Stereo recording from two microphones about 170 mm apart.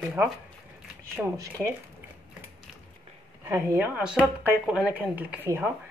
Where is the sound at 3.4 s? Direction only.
15° right (ahead or behind).